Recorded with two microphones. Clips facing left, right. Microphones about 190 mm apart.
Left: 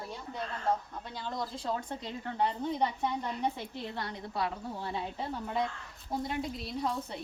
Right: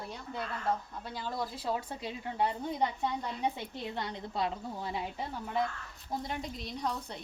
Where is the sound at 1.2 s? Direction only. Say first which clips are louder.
Even; 5° right (ahead or behind).